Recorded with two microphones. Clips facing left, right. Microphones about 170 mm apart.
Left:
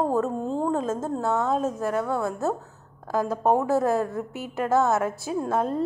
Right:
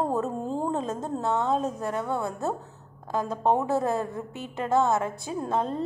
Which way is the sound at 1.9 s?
25° right (ahead or behind).